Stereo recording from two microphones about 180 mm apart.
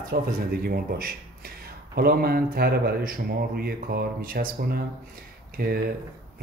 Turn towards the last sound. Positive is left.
turn(degrees=-55)  # may be behind; listen again after turning